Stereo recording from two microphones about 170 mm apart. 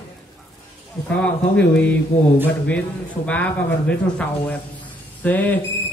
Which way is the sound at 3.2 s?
10° left (ahead or behind).